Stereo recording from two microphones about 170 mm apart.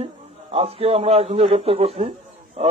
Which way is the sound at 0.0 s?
35° right (ahead or behind).